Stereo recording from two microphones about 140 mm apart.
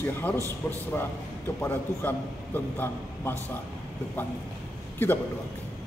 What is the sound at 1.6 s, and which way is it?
A man's voice, 15° left (ahead or behind).